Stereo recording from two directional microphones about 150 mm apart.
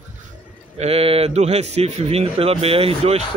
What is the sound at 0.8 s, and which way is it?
Speech, 45° right (ahead or behind).